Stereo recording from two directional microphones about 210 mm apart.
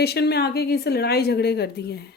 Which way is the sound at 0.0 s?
50° left (ahead or behind).